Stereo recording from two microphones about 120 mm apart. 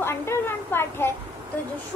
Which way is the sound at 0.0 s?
20° left (ahead or behind).